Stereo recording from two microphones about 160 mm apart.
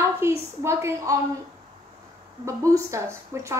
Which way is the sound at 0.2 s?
15° right (ahead or behind).